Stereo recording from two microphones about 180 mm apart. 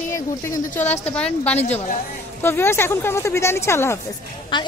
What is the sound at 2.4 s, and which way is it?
Speech, 15° left (ahead or behind).